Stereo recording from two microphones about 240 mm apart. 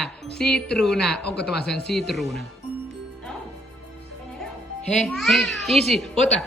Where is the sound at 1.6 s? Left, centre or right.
Left.